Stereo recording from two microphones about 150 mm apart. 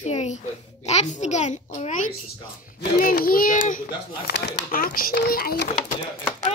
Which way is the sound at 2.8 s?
75° left (ahead or behind).